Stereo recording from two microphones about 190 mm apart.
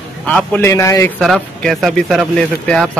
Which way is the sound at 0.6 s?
15° left (ahead or behind).